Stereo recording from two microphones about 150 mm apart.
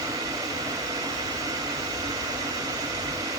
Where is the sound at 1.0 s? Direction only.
25° right (ahead or behind).